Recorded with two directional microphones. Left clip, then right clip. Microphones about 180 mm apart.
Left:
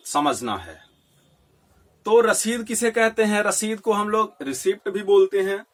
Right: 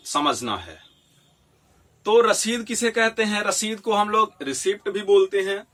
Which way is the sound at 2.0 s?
35° left (ahead or behind).